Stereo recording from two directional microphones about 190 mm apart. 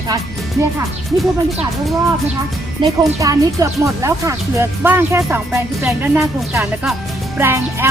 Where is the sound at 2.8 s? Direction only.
25° right (ahead or behind); by 6.2 s 5° right (ahead or behind).